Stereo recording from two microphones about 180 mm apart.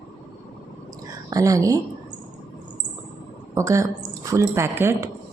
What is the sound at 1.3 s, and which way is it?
Speech, 20° right (ahead or behind).